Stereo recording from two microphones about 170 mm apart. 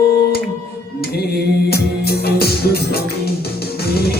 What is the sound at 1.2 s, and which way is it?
Music, 65° left (ahead or behind).